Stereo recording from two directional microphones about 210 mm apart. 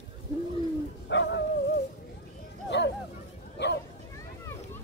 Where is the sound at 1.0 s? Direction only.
55° left (ahead or behind).